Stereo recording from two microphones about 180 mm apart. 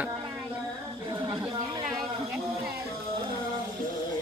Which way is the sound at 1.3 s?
20° right (ahead or behind).